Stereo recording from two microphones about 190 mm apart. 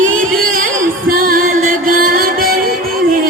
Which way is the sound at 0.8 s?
50° right (ahead or behind).